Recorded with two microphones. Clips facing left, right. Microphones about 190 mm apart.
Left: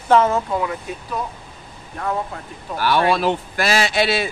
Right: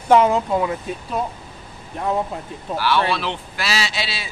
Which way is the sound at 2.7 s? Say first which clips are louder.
Left 2 dB; 45° left (ahead or behind).